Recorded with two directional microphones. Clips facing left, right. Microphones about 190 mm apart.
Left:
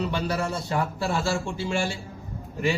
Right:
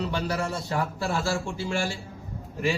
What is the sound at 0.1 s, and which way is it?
A man's voice, centre (ahead or behind).